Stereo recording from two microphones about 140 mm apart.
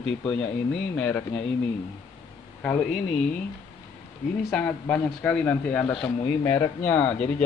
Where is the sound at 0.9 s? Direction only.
5° left (ahead or behind).